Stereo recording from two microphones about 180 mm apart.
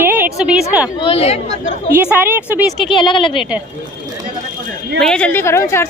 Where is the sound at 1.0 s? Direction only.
30° left (ahead or behind).